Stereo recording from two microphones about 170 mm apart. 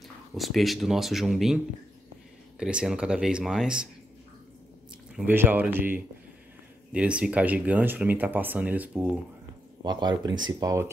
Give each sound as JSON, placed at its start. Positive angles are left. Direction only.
{"t": 0.4, "sound": "speech", "side_deg": 0}
{"t": 2.6, "sound": "speech", "side_deg": -5}
{"t": 5.1, "sound": "speech", "side_deg": -10}
{"t": 9.8, "sound": "speech", "side_deg": -25}